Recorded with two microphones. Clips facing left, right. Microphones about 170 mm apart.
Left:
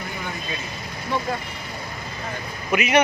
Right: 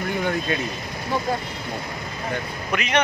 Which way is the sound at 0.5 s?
65° right (ahead or behind).